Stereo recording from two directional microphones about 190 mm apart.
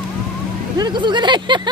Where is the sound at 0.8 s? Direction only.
25° right (ahead or behind).